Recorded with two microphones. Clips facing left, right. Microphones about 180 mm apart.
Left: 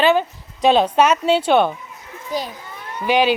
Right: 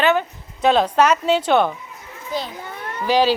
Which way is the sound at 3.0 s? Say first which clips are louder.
Even; 20° left (ahead or behind).